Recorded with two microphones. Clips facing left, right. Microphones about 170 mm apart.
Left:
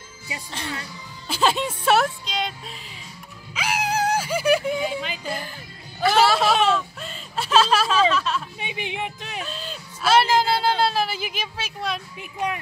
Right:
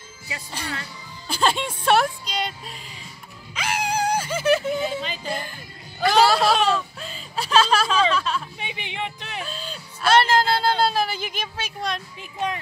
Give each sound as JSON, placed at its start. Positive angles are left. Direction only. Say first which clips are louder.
{"t": 1.2, "sound": "music", "louder": "left 1 dB", "side_deg": 0}
{"t": 3.5, "sound": "a sound", "louder": "left 1 dB", "side_deg": 5}
{"t": 5.9, "sound": "speech", "louder": "right 1 dB", "side_deg": 5}
{"t": 8.9, "sound": "speech", "louder": "left 1 dB", "side_deg": 15}
{"t": 9.4, "sound": "speech", "louder": "even", "side_deg": 0}